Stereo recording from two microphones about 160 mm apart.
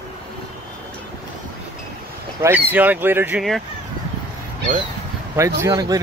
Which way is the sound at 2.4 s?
15° right (ahead or behind).